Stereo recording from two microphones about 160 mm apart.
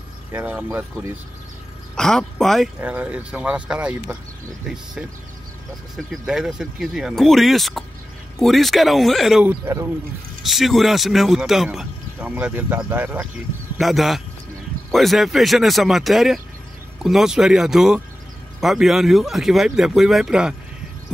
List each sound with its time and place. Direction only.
0.3 s speech: 10° right (ahead or behind)
2.0 s speech: 5° left (ahead or behind)
2.8 s speech: 10° right (ahead or behind)
6.2 s speech: 5° right (ahead or behind)
9.5 s speech: 15° right (ahead or behind)
10.4 s speech: centre (ahead or behind)
13.7 s speech: centre (ahead or behind)